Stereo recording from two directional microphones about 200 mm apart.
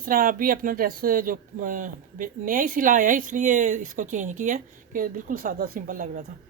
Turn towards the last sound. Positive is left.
turn(degrees=-40)  # may be behind; listen again after turning